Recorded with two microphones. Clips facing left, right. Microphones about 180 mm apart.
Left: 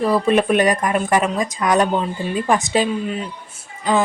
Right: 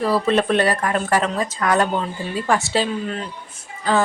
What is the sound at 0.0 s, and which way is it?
A woman's voice, 15° left (ahead or behind).